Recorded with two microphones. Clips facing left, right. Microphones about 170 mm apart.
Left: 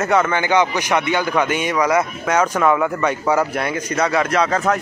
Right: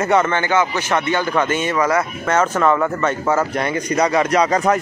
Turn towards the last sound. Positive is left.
turn(degrees=-15)  # may be behind; listen again after turning